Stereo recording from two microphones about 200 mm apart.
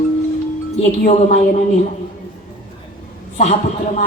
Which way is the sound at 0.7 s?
35° left (ahead or behind).